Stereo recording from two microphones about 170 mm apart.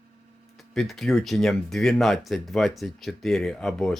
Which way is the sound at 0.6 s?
Centre (ahead or behind).